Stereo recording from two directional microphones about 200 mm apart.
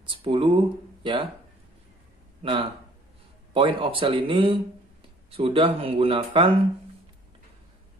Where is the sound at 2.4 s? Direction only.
25° right (ahead or behind).